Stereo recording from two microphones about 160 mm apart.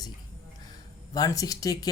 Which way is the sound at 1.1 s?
20° left (ahead or behind).